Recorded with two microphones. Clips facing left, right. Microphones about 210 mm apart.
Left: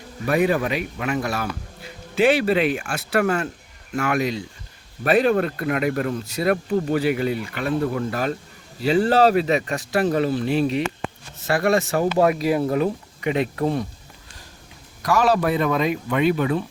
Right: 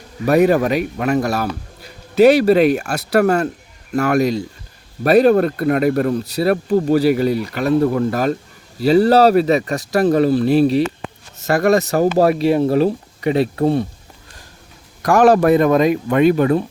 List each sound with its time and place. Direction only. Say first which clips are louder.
0.3 s speech: right 7 dB; 40° right (ahead or behind)
15.0 s speech: right 7 dB; 50° right (ahead or behind)